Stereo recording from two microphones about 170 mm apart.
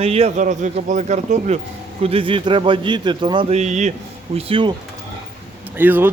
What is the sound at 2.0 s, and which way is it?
A man's voice, 30° right (ahead or behind).